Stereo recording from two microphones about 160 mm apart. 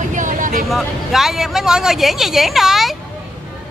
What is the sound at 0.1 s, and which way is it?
Vehicle, 55° right (ahead or behind).